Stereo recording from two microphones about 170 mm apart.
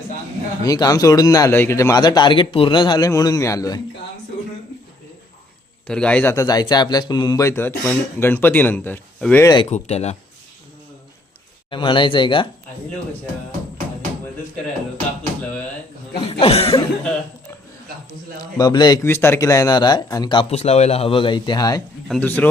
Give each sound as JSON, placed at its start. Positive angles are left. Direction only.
{"t": 0.6, "sound": "a man's voice", "side_deg": 20}
{"t": 5.9, "sound": "speech", "side_deg": 5}
{"t": 9.6, "sound": "speech", "side_deg": 40}
{"t": 11.7, "sound": "a man's voice", "side_deg": 30}
{"t": 16.2, "sound": "cough", "side_deg": 35}
{"t": 18.3, "sound": "a man's voice", "side_deg": 20}
{"t": 19.0, "sound": "a man's voice", "side_deg": 15}
{"t": 22.1, "sound": "speech", "side_deg": 10}